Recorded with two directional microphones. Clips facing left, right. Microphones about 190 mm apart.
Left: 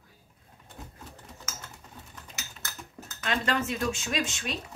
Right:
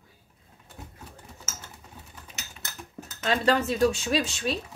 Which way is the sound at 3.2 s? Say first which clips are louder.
Right 5 dB; 35° right (ahead or behind).